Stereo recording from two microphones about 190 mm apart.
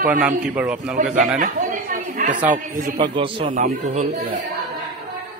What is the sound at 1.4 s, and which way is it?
Speech, 45° right (ahead or behind).